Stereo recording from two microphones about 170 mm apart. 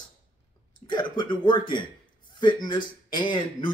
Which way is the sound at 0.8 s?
25° left (ahead or behind).